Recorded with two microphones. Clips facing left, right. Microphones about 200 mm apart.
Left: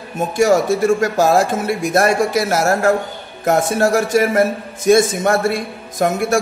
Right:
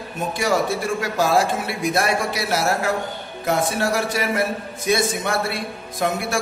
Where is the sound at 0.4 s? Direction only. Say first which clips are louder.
Left 8 dB; 45° left (ahead or behind).